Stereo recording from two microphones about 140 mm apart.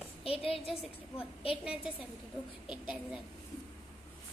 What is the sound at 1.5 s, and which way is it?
Speech, 5° right (ahead or behind).